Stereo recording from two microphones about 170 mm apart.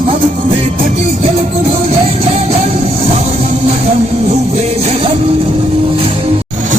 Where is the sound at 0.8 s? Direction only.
45° right (ahead or behind).